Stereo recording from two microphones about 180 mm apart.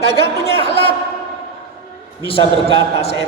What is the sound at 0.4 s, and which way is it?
Speech, 30° left (ahead or behind).